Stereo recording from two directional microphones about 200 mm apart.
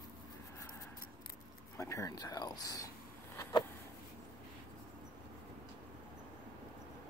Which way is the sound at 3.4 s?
20° left (ahead or behind).